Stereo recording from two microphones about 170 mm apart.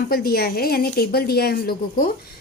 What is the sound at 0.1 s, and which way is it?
Speech, 65° left (ahead or behind).